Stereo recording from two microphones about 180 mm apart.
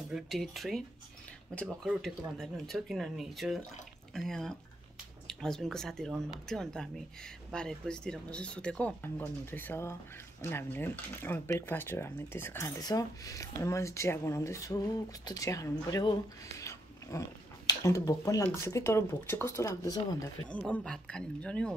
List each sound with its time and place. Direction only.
0.1 s speech: centre (ahead or behind); by 20.2 s 20° left (ahead or behind)
20.4 s speech: 5° left (ahead or behind)